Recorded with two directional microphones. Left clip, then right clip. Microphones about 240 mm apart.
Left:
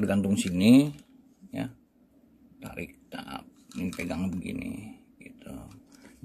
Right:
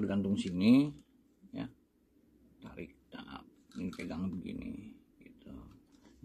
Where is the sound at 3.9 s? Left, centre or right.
Left.